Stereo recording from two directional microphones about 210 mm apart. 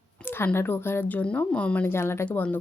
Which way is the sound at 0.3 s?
10° left (ahead or behind).